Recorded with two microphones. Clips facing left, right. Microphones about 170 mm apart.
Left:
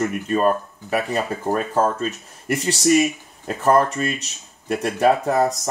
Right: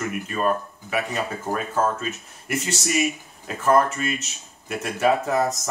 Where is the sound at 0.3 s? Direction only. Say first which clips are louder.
Left 4 dB; 35° left (ahead or behind).